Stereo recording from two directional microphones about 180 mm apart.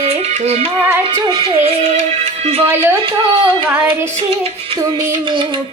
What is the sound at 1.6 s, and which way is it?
Music, 40° right (ahead or behind).